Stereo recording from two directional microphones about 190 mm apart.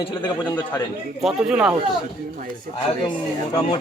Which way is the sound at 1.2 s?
5° right (ahead or behind).